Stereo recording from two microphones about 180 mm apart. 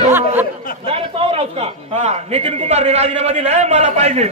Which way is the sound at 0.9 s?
30° right (ahead or behind).